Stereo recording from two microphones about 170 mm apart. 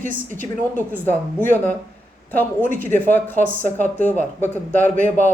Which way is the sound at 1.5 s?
10° left (ahead or behind).